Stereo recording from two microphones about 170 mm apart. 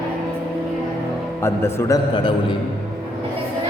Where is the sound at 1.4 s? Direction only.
15° left (ahead or behind).